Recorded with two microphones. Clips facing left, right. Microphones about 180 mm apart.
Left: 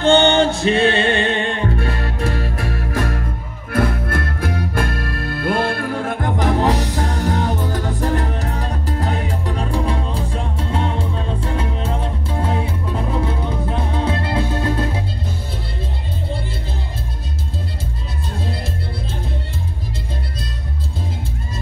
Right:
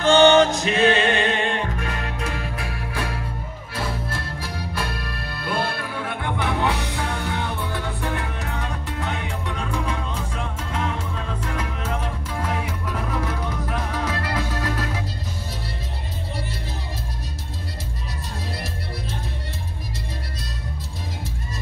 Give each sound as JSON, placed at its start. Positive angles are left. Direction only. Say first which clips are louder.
{"t": 0.0, "sound": "chant", "louder": "left 1 dB", "side_deg": 30}
{"t": 0.6, "sound": "music", "louder": "left 3 dB", "side_deg": 35}
{"t": 3.7, "sound": "music", "louder": "left 10 dB", "side_deg": 55}